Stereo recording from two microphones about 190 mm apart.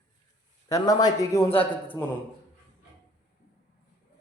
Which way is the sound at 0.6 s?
20° left (ahead or behind).